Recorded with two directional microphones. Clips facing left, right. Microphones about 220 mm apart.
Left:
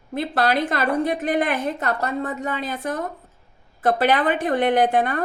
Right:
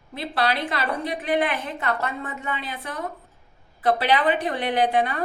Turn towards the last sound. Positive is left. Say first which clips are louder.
# left 3 dB
turn(degrees=50)  # may be behind; listen again after turning